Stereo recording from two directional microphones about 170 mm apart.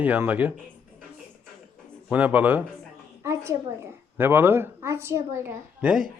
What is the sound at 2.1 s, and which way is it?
A woman's voice, 10° right (ahead or behind).